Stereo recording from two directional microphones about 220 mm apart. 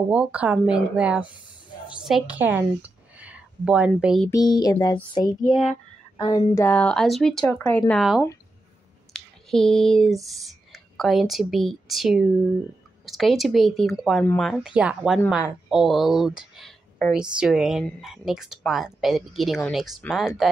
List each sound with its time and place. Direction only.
0.1 s a woman's voice: 5° right (ahead or behind)
4.3 s a sound: 15° left (ahead or behind)
6.1 s a woman's voice: 15° left (ahead or behind); by 20.4 s centre (ahead or behind)